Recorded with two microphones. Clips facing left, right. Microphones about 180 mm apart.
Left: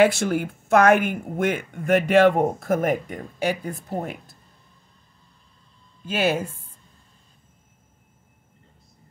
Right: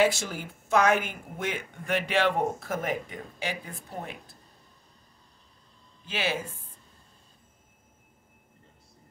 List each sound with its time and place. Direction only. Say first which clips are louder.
0.0 s speech: left 7 dB; 60° left (ahead or behind)
6.0 s speech: left 8 dB; 45° left (ahead or behind)